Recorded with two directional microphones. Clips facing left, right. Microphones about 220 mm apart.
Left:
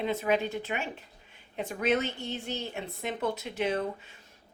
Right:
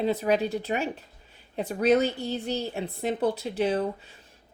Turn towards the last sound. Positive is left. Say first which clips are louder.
# right 4 dB
turn(degrees=-35)  # may be behind; listen again after turning